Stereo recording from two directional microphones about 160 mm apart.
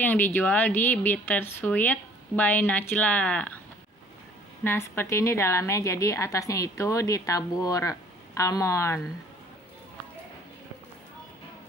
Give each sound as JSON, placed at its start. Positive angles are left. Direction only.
{"t": 0.0, "sound": "a woman's voice", "side_deg": 10}
{"t": 4.6, "sound": "a woman's voice", "side_deg": 15}